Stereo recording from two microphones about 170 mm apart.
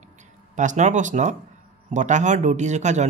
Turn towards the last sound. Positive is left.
turn(degrees=-45)  # may be behind; listen again after turning